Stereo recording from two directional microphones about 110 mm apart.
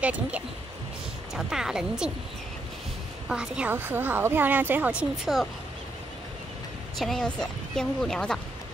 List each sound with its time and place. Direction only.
0.0 s a woman's voice: 10° right (ahead or behind)
3.3 s speech: 10° right (ahead or behind)
3.7 s speech: 20° right (ahead or behind)
5.2 s a woman's voice: centre (ahead or behind)
7.0 s a woman's voice: 5° left (ahead or behind)